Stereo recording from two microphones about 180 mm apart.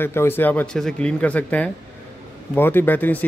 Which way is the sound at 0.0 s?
10° left (ahead or behind).